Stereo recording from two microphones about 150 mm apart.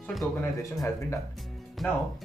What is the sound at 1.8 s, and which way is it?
Speech, centre (ahead or behind).